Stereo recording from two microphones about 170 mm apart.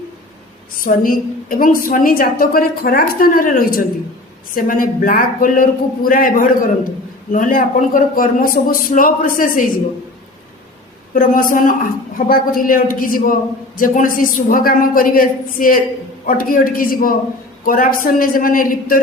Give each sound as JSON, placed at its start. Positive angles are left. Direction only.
{"t": 0.9, "sound": "a woman's voice", "side_deg": 55}
{"t": 11.1, "sound": "a woman's voice", "side_deg": 55}